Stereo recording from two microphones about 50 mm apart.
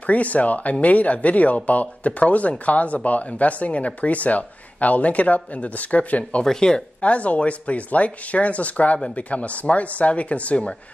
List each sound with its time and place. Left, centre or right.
0.0 s speech: left
6.4 s speech: centre
7.1 s speech: left